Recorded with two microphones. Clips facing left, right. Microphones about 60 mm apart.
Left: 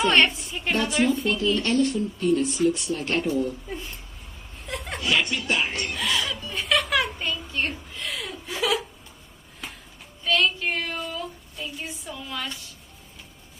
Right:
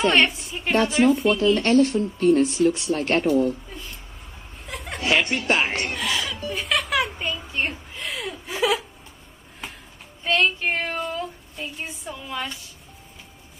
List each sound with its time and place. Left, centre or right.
0.0 s a woman's voice: centre
0.5 s a sound: centre
1.2 s speech: centre
1.6 s speech: right
4.6 s chuckle: centre
5.0 s speech: right
5.9 s a sound: centre; by 8.8 s right
10.2 s a sound: right
12.3 s a woman's voice: centre